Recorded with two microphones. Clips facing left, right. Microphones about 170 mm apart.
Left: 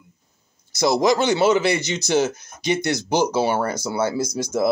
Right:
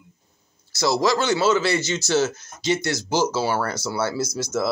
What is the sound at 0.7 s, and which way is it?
A man's voice, 20° left (ahead or behind).